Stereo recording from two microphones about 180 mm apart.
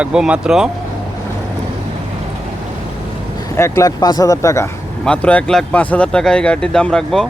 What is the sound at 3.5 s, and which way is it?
Speech, 15° left (ahead or behind).